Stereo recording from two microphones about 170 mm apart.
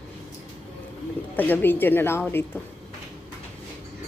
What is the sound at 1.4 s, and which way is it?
A woman's voice, 10° left (ahead or behind).